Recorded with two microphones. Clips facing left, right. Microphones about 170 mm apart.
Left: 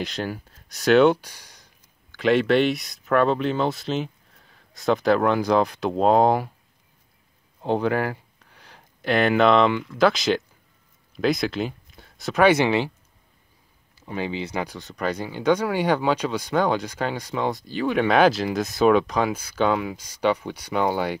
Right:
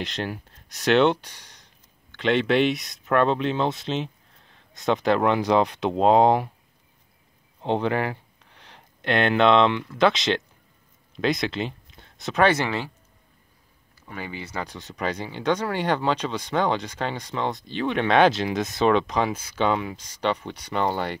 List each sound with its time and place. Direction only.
0.0 s speech: centre (ahead or behind)
7.6 s speech: 5° left (ahead or behind)
12.6 s speech: 20° left (ahead or behind)
14.0 s speech: 20° left (ahead or behind)
14.7 s speech: centre (ahead or behind)